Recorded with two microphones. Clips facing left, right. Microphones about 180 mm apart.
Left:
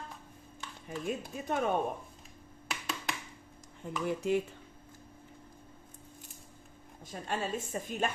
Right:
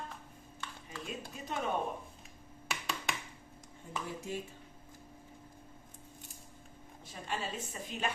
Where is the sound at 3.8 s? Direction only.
70° left (ahead or behind).